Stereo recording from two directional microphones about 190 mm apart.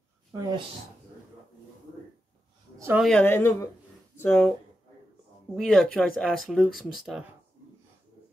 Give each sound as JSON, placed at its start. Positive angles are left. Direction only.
{"t": 0.3, "sound": "speech", "side_deg": -20}
{"t": 2.8, "sound": "speech", "side_deg": -10}
{"t": 3.1, "sound": "speech", "side_deg": 10}
{"t": 5.6, "sound": "speech", "side_deg": 5}